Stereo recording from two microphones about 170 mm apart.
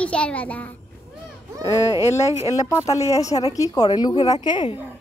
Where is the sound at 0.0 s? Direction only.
5° left (ahead or behind); by 4.7 s 25° left (ahead or behind).